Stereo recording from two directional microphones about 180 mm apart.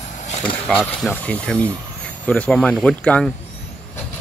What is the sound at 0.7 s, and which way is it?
Speech, 5° left (ahead or behind).